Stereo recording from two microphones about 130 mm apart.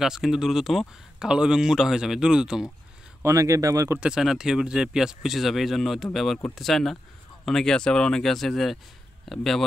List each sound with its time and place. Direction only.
0.0 s speech: 5° right (ahead or behind)
3.2 s speech: 25° right (ahead or behind)
4.0 s speech: 5° right (ahead or behind)